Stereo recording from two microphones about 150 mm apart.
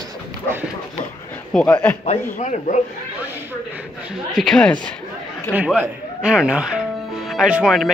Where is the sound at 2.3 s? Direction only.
55° left (ahead or behind).